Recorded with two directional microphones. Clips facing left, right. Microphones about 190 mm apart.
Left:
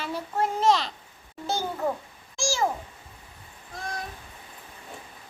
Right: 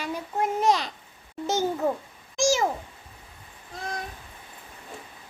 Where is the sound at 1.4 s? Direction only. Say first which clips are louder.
Right 3 dB; 20° right (ahead or behind).